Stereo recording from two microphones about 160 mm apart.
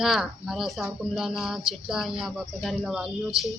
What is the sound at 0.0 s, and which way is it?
A woman's voice, centre (ahead or behind).